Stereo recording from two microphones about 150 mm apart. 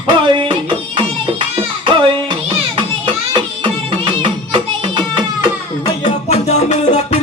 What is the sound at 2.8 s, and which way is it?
Music, 35° right (ahead or behind).